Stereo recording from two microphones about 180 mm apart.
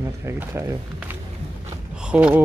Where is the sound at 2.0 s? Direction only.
5° right (ahead or behind).